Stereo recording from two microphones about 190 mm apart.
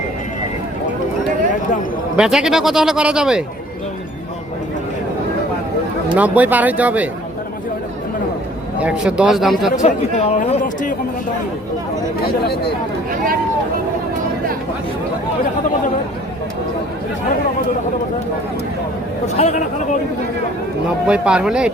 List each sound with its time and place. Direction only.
2.1 s speech: 5° right (ahead or behind)
6.1 s speech: 10° right (ahead or behind)
8.8 s speech: 5° right (ahead or behind)
9.7 s speech: 40° left (ahead or behind)
19.4 s speech: 40° left (ahead or behind)
21.1 s speech: 5° right (ahead or behind)